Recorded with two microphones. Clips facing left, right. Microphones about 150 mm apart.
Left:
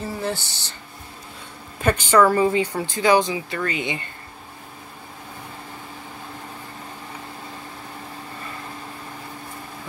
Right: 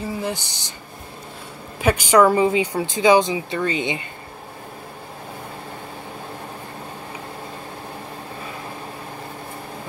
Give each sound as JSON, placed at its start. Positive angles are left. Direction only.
{"t": 0.2, "sound": "speech", "side_deg": -15}
{"t": 1.8, "sound": "speech", "side_deg": -10}